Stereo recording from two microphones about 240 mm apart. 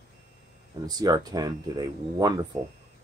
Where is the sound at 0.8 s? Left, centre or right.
Centre.